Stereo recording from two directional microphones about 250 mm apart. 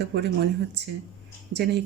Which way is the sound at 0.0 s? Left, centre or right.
Right.